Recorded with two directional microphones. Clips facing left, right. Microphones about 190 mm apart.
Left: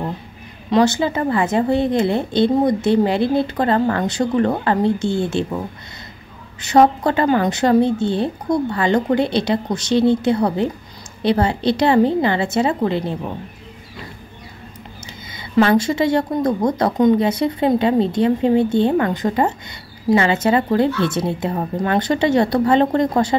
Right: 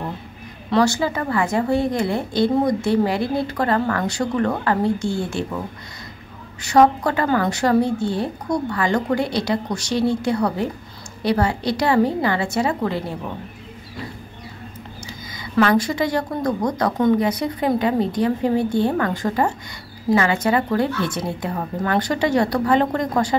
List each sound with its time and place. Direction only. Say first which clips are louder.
0.7 s a woman's voice: left 3 dB; 20° left (ahead or behind)
6.6 s a woman's voice: left 2 dB; 25° left (ahead or behind)
15.3 s a woman's voice: left 3 dB; 25° left (ahead or behind)